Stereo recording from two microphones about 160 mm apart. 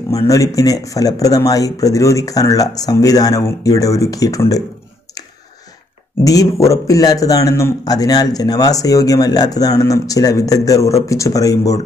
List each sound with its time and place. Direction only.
0.1 s a man's voice: 20° left (ahead or behind)
6.2 s a man's voice: 20° left (ahead or behind)